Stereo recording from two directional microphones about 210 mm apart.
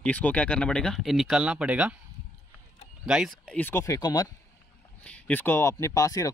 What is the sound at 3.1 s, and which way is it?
Speech, centre (ahead or behind).